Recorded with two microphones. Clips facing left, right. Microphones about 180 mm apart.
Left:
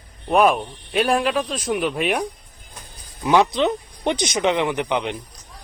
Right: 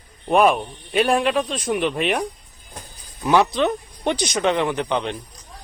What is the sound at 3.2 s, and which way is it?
Speech, 15° left (ahead or behind).